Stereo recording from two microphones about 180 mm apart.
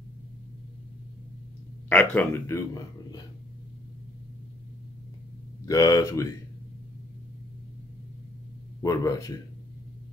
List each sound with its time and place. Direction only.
1.9 s a man's voice: 10° left (ahead or behind)
5.7 s a man's voice: 20° left (ahead or behind)
8.8 s speech: 20° left (ahead or behind)